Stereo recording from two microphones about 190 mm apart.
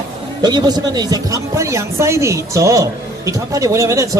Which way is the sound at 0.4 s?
20° right (ahead or behind).